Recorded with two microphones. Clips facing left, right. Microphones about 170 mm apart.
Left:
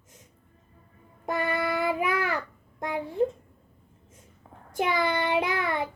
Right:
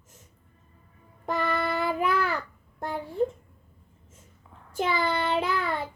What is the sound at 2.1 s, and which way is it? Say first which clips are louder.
Babbling: right 1 dB; 65° left (ahead or behind).